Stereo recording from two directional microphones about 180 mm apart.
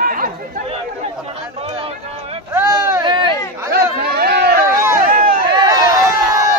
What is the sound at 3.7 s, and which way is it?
Chatter, 60° right (ahead or behind).